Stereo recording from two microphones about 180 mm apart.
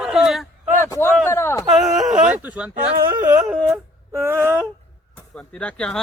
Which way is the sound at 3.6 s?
15° right (ahead or behind).